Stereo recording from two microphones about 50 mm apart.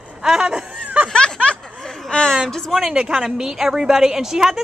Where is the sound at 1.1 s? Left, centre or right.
Centre.